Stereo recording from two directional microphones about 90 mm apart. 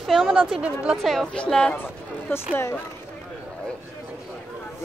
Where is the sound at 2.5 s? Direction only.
25° left (ahead or behind).